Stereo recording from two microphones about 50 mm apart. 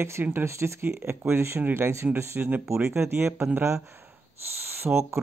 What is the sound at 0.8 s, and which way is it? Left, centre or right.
Speech, right.